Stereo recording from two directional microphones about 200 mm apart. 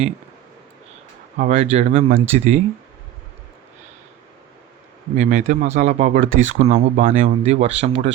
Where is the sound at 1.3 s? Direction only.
35° right (ahead or behind).